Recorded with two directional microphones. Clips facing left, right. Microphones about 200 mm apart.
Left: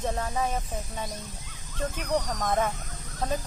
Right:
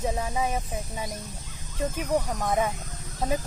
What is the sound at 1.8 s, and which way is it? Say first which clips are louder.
Speech: right 2 dB; 15° right (ahead or behind).